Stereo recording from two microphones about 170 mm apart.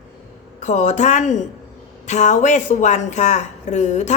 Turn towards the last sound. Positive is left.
turn(degrees=45)  # may be behind; listen again after turning